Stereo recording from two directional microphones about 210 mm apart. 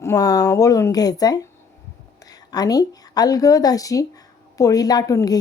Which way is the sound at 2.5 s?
15° left (ahead or behind).